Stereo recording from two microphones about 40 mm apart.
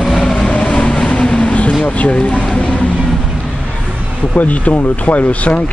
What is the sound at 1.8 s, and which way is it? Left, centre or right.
Speech, left.